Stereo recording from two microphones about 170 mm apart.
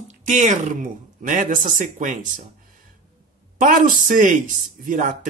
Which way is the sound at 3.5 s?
55° right (ahead or behind).